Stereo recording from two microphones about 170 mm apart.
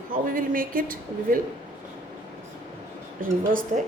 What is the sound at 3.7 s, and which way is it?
Speech, 50° right (ahead or behind).